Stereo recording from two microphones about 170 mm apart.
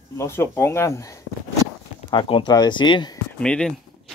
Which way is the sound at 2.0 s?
30° left (ahead or behind).